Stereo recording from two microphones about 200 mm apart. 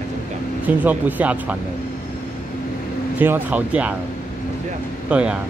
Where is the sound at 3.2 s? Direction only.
10° right (ahead or behind).